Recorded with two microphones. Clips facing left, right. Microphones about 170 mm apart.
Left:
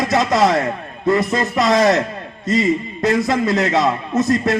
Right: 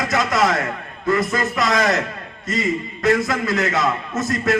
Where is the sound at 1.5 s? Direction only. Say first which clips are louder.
Left 6 dB; 20° left (ahead or behind).